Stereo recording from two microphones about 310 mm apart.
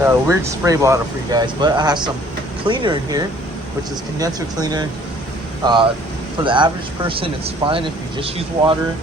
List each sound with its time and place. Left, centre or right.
0.0 s speech: centre